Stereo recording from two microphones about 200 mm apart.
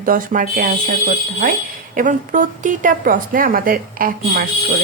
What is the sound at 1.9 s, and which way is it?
Speech, 40° right (ahead or behind).